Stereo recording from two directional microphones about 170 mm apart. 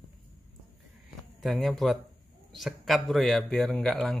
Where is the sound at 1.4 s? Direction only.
Centre (ahead or behind).